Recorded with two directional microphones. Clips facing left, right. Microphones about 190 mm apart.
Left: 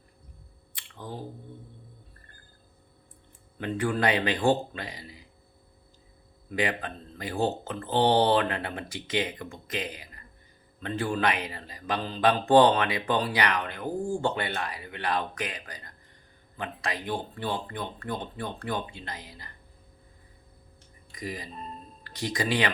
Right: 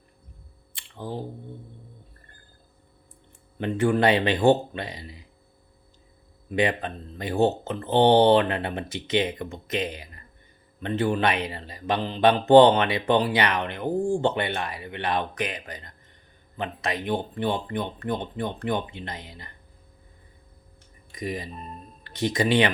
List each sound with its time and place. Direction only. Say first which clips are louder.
0.7 s a sound: right 6 dB; 25° right (ahead or behind)
3.6 s speech: right 5 dB; 25° right (ahead or behind)
6.5 s speech: right 5 dB; 25° right (ahead or behind)
21.1 s speech: right 5 dB; 25° right (ahead or behind)